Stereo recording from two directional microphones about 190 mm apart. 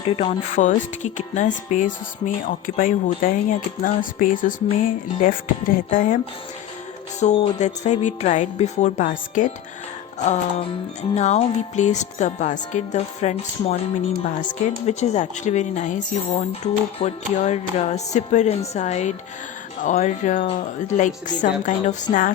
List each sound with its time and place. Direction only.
0.0 s speech: 35° left (ahead or behind)
7.2 s speech: 40° left (ahead or behind)
14.8 s speech: 35° left (ahead or behind)
17.0 s speech: 35° left (ahead or behind)